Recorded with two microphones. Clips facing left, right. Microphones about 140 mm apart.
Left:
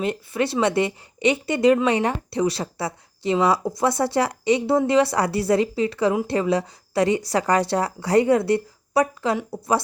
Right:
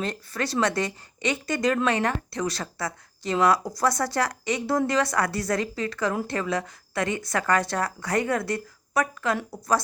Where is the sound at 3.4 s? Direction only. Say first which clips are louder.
Left 1 dB; 5° left (ahead or behind).